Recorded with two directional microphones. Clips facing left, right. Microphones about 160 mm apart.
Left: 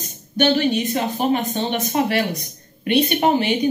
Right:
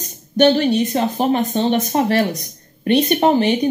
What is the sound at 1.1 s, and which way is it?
A woman's voice, 40° right (ahead or behind).